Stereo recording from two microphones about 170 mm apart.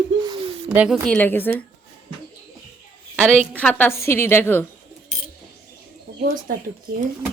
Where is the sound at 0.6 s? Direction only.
5° right (ahead or behind).